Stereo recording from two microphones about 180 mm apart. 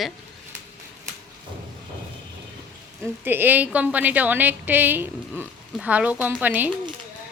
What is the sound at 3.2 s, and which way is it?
A woman's voice, 10° right (ahead or behind).